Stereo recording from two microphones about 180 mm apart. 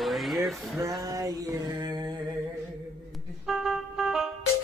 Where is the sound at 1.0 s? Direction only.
20° right (ahead or behind).